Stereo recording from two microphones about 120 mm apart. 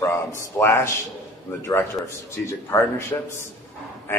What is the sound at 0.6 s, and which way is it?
A man's voice, 20° left (ahead or behind).